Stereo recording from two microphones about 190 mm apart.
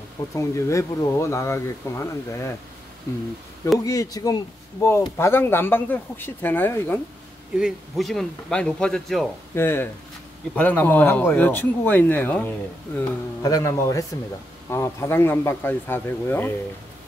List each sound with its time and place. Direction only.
0.4 s speech: 15° left (ahead or behind)
3.8 s speech: 20° left (ahead or behind)
7.5 s speech: centre (ahead or behind)
13.4 s speech: 20° left (ahead or behind)